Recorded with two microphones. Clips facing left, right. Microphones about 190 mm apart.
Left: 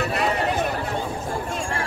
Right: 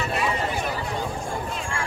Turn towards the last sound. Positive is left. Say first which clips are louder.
# left 3 dB
turn(degrees=65)  # may be behind; listen again after turning